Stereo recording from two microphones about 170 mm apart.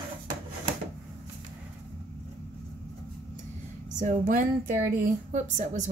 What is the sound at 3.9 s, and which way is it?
A woman's voice, 50° right (ahead or behind).